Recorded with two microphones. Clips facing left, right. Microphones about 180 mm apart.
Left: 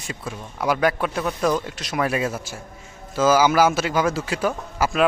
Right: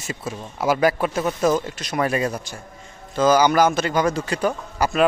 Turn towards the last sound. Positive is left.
turn(degrees=0)  # may be behind; listen again after turning